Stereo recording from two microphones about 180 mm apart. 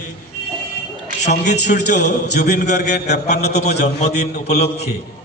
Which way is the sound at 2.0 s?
65° left (ahead or behind).